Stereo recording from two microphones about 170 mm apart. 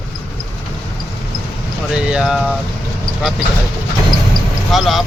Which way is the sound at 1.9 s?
5° right (ahead or behind).